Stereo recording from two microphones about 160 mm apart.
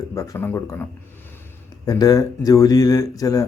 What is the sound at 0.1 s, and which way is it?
Speech, 20° left (ahead or behind).